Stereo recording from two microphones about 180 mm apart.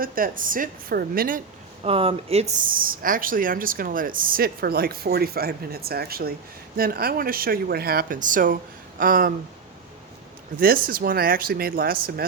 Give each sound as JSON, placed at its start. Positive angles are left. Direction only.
{"t": 0.0, "sound": "speech", "side_deg": -50}
{"t": 1.8, "sound": "speech", "side_deg": -30}
{"t": 2.6, "sound": "speech", "side_deg": -50}
{"t": 10.6, "sound": "speech", "side_deg": -55}